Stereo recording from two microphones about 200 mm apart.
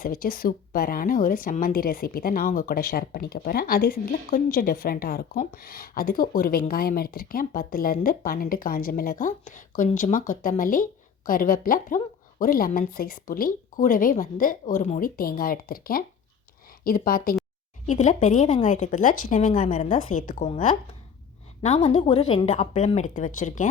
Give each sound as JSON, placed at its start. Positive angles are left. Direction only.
{"t": 0.0, "sound": "a woman's voice", "side_deg": 45}